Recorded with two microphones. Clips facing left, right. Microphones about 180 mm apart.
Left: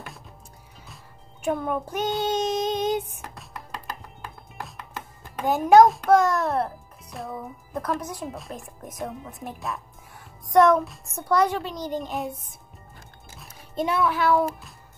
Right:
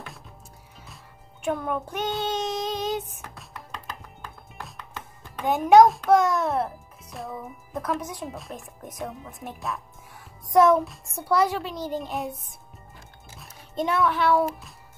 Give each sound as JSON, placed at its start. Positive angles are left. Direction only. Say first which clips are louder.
{"t": 1.4, "sound": "a child's voice", "louder": "left 1 dB", "side_deg": 0}
{"t": 2.2, "sound": "child singing", "louder": "left 3 dB", "side_deg": 20}
{"t": 3.2, "sound": "music", "louder": "left 2 dB", "side_deg": 0}
{"t": 10.5, "sound": "a child's voice", "louder": "even", "side_deg": 0}
{"t": 13.4, "sound": "speech", "louder": "left 1 dB", "side_deg": 0}